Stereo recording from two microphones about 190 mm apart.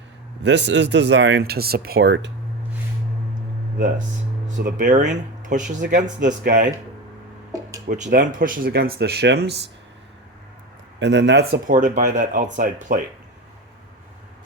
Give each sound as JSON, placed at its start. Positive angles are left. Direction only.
{"t": 0.4, "sound": "speech", "side_deg": -70}
{"t": 4.4, "sound": "speech", "side_deg": -45}
{"t": 5.4, "sound": "a sound", "side_deg": -40}
{"t": 5.8, "sound": "speech", "side_deg": -45}
{"t": 7.9, "sound": "speech", "side_deg": -40}
{"t": 11.0, "sound": "speech", "side_deg": -70}
{"t": 11.7, "sound": "speech", "side_deg": -45}